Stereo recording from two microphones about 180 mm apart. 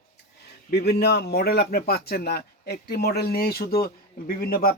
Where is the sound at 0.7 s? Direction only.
65° left (ahead or behind).